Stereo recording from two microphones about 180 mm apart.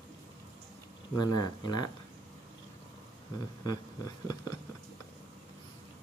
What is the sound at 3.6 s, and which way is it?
Speech, 20° left (ahead or behind).